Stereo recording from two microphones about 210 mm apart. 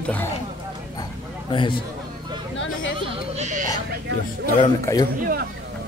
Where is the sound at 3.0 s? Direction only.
30° right (ahead or behind).